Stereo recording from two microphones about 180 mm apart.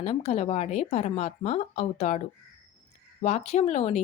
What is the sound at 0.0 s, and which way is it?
Speech, 35° left (ahead or behind).